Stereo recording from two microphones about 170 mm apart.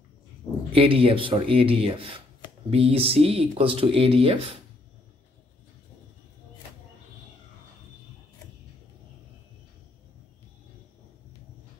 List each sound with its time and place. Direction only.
0.7 s speech: 35° right (ahead or behind)